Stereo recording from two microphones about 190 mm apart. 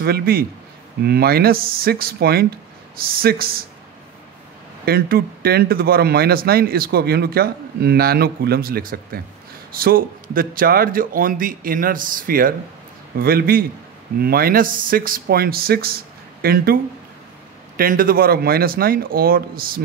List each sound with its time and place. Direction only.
0.0 s speech: 55° right (ahead or behind)
4.8 s speech: 55° right (ahead or behind)
17.7 s speech: 50° right (ahead or behind)